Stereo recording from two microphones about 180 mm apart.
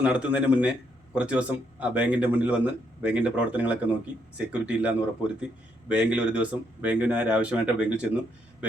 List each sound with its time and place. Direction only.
0.0 s speech: 5° right (ahead or behind)